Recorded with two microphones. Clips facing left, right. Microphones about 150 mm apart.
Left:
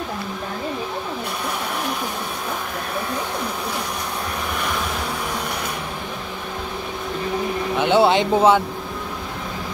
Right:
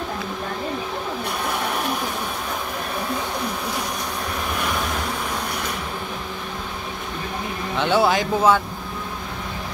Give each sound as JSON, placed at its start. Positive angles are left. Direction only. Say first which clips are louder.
{"t": 7.8, "sound": "a man's voice", "louder": "left 3 dB", "side_deg": 25}